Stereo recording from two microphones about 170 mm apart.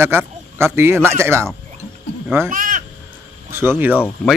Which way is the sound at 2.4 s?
50° right (ahead or behind).